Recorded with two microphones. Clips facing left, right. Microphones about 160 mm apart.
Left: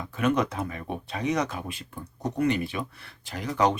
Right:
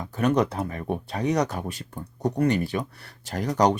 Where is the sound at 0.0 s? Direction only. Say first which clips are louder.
Right 3 dB; 35° right (ahead or behind).